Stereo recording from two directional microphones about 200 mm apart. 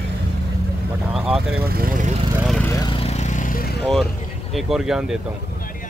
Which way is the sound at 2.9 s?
30° left (ahead or behind).